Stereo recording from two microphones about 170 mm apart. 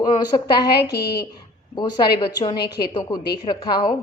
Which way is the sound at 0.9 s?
65° left (ahead or behind).